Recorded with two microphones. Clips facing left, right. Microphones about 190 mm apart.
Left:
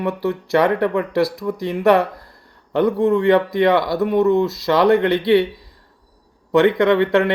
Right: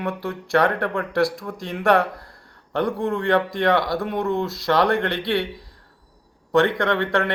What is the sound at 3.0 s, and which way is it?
Speech, 20° left (ahead or behind).